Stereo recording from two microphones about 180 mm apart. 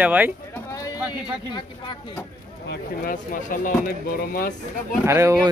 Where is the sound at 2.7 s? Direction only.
50° left (ahead or behind).